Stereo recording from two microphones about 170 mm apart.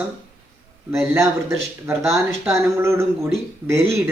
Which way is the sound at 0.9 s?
15° right (ahead or behind).